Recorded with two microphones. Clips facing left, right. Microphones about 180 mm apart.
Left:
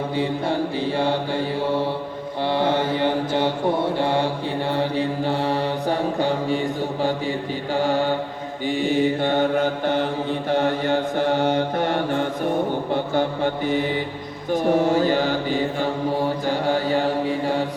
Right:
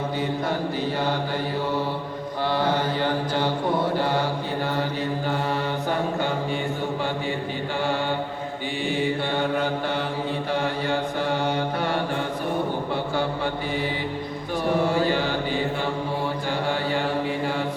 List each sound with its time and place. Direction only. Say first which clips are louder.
2.5 s mantra: left 3 dB; 25° left (ahead or behind)
7.8 s mantra: left 5 dB; 40° left (ahead or behind)
16.5 s mantra: left 4 dB; 40° left (ahead or behind)